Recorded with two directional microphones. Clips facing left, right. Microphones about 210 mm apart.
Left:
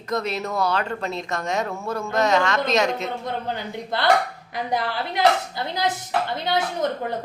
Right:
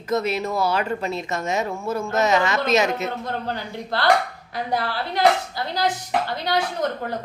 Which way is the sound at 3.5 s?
20° left (ahead or behind).